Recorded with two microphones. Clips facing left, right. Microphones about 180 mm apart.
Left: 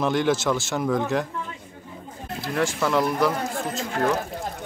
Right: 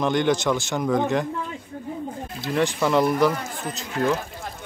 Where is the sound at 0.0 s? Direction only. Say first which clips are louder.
Right 1 dB; 5° left (ahead or behind).